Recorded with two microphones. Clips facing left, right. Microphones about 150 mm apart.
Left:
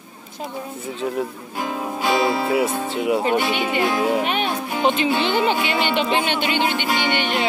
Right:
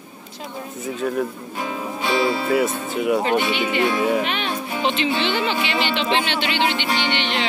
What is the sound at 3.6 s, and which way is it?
Speech, centre (ahead or behind).